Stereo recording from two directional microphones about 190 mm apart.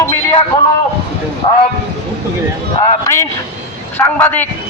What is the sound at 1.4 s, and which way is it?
Speech, 25° left (ahead or behind).